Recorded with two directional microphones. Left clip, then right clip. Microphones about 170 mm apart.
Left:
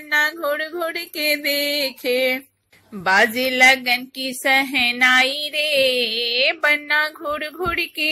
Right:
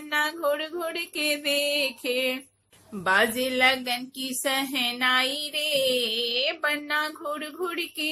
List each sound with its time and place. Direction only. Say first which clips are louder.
0.1 s a woman's voice: left 6 dB; 20° left (ahead or behind)